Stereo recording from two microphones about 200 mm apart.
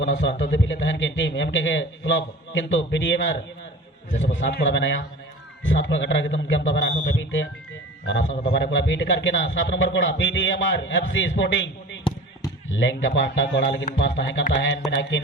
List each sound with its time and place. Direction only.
0.0 s a man's voice: 65° left (ahead or behind)